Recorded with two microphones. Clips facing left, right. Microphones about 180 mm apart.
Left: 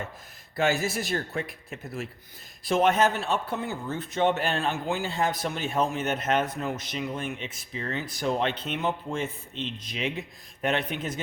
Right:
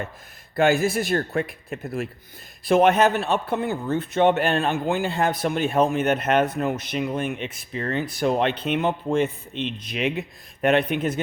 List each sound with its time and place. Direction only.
0.5 s speech: 55° right (ahead or behind)